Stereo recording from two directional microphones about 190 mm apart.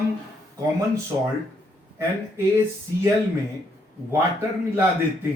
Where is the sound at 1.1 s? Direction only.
25° right (ahead or behind).